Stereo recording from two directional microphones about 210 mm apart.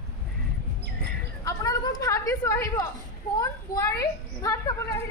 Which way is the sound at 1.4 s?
15° left (ahead or behind).